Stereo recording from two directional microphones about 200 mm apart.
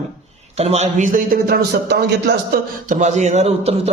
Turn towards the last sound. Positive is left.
turn(degrees=-30)  # may be behind; listen again after turning